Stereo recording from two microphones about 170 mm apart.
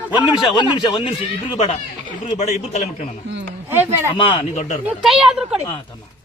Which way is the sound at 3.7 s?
15° right (ahead or behind).